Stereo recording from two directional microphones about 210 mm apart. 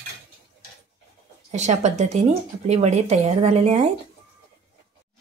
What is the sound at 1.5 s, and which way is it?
Speech, 35° right (ahead or behind).